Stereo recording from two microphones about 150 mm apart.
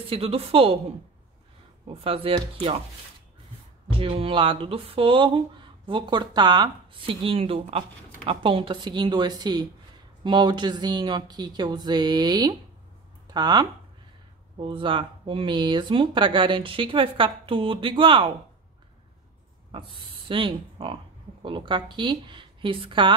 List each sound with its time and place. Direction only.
0.1 s speech: 40° right (ahead or behind)
1.9 s speech: 40° right (ahead or behind)
3.9 s speech: 40° right (ahead or behind)
19.7 s speech: 35° right (ahead or behind)